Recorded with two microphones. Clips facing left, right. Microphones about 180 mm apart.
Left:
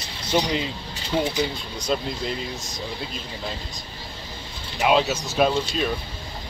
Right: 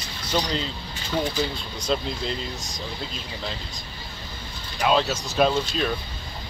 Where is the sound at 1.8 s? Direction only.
5° left (ahead or behind).